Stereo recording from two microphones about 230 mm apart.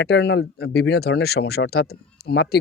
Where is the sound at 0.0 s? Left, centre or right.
Left.